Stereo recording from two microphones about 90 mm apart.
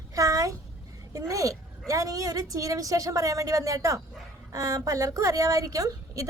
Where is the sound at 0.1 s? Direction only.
40° right (ahead or behind).